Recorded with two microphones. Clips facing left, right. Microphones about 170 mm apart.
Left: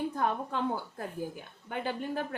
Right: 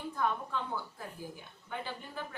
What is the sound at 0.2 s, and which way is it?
Speech, 60° left (ahead or behind).